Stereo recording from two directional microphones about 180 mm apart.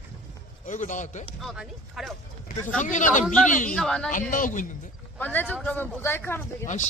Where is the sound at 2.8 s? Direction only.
45° left (ahead or behind).